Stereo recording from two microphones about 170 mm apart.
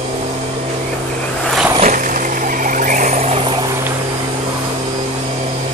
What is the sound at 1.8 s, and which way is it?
Vehicle, 50° right (ahead or behind).